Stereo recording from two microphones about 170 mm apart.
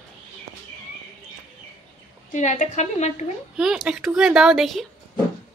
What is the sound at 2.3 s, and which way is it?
Speech, 45° left (ahead or behind).